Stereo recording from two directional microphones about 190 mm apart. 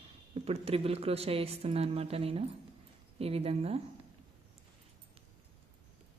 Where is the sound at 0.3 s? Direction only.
30° right (ahead or behind).